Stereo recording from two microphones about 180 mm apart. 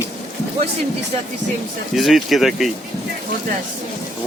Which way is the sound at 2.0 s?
Centre (ahead or behind).